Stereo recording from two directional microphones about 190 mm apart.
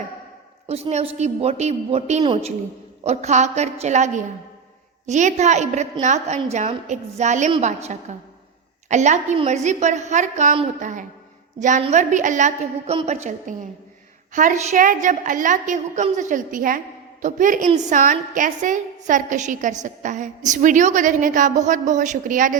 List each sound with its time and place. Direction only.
0.7 s a woman's voice: 35° right (ahead or behind)
14.3 s a woman's voice: 40° right (ahead or behind)